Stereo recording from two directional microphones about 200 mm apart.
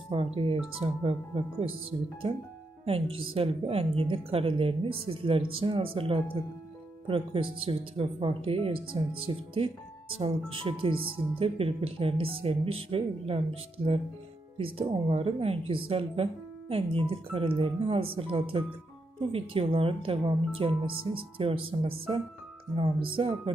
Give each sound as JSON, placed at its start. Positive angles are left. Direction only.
{"t": 0.1, "sound": "speech", "side_deg": -25}
{"t": 3.3, "sound": "speech", "side_deg": -30}